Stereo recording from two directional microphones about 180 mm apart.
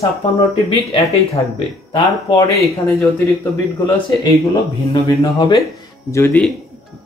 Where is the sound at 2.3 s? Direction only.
15° left (ahead or behind).